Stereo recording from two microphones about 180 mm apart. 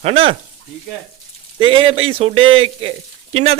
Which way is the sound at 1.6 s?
30° right (ahead or behind).